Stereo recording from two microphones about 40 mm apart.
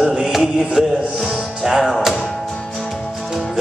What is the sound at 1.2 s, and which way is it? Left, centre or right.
Music, centre.